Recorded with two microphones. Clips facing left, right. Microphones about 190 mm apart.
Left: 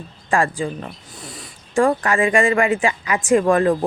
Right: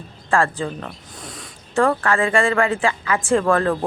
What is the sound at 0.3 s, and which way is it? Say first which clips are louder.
A woman's voice: even; 15° left (ahead or behind).